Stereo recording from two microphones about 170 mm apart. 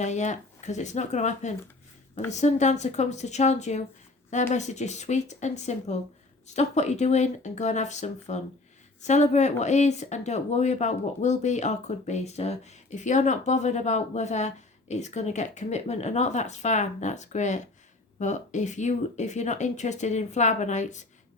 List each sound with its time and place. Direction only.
0.0 s speech: 45° left (ahead or behind)